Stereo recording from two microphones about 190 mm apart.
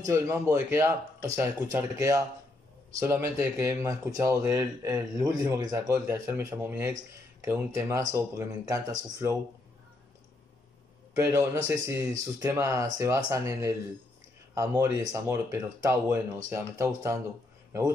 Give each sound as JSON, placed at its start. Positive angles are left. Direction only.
{"t": 0.0, "sound": "speech", "side_deg": -15}
{"t": 11.1, "sound": "speech", "side_deg": -15}